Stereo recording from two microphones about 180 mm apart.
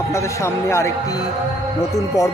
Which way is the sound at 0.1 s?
15° left (ahead or behind).